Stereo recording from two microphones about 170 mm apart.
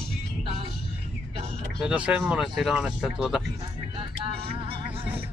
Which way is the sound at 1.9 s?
5° right (ahead or behind).